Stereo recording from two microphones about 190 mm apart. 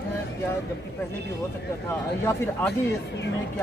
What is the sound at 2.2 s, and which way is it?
Speech, 10° left (ahead or behind).